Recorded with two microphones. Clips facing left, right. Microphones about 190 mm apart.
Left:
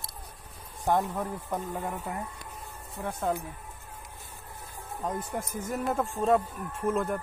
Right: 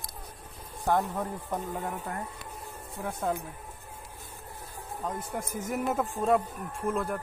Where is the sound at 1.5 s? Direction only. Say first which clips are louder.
Even; 5° left (ahead or behind).